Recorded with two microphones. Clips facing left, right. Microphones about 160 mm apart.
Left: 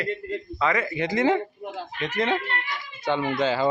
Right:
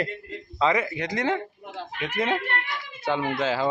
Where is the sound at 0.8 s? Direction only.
Centre (ahead or behind).